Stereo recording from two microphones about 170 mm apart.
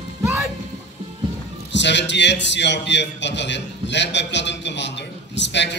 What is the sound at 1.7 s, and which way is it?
A man's voice, 90° left.